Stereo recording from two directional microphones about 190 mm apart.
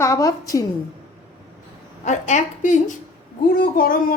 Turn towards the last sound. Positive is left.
turn(degrees=50)  # may be behind; listen again after turning